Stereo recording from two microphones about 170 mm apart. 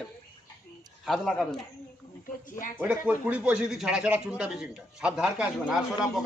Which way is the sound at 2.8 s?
10° right (ahead or behind).